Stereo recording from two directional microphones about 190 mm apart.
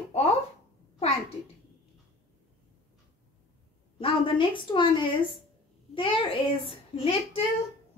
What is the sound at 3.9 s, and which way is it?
A child's voice, 25° left (ahead or behind).